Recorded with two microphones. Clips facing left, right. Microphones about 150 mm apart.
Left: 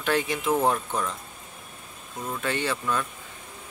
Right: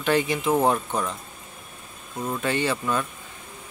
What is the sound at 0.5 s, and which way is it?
Speech, 15° right (ahead or behind).